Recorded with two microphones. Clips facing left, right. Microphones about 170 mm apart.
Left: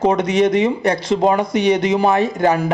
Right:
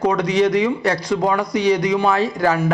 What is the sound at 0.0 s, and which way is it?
A man's voice, 20° left (ahead or behind).